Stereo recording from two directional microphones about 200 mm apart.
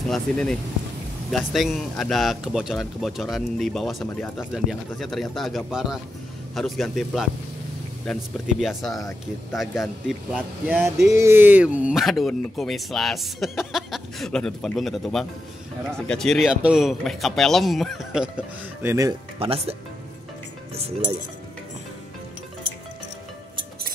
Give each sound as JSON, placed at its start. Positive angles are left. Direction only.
{"t": 0.1, "sound": "speech", "side_deg": 5}
{"t": 19.4, "sound": "speech", "side_deg": -30}